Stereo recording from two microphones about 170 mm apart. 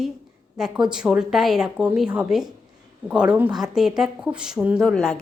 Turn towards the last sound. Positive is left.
turn(degrees=5)  # may be behind; listen again after turning